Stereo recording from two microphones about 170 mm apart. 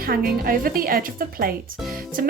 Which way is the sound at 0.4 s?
60° right (ahead or behind).